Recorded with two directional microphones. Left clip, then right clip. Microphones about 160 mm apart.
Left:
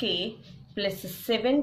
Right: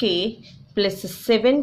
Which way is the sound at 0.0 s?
40° right (ahead or behind).